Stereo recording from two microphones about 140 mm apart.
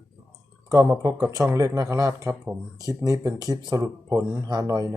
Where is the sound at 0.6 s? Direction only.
25° right (ahead or behind).